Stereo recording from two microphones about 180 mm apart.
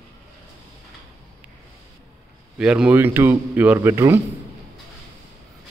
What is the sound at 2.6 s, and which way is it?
Speech, 5° right (ahead or behind).